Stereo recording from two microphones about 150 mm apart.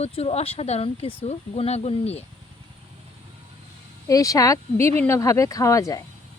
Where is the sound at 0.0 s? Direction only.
40° left (ahead or behind).